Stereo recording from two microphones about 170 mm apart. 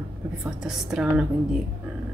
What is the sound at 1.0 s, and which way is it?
Speech, 5° right (ahead or behind).